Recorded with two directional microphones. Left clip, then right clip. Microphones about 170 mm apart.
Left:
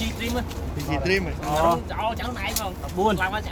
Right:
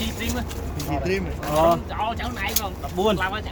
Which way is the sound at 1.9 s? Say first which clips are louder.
Right 1 dB; 50° left (ahead or behind).